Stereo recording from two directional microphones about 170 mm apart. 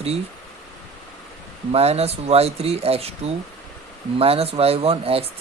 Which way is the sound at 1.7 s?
35° right (ahead or behind).